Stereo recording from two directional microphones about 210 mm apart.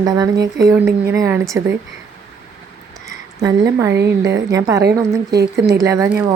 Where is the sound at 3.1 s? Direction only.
15° right (ahead or behind).